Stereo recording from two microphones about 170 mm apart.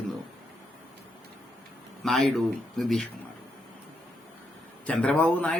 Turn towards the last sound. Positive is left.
turn(degrees=10)  # may be behind; listen again after turning